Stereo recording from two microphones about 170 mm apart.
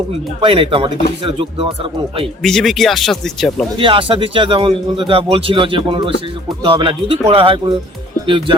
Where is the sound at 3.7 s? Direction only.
30° right (ahead or behind).